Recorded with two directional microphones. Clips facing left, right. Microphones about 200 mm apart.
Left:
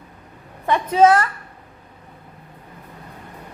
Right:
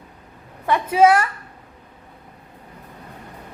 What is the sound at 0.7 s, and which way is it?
Speech, 10° right (ahead or behind).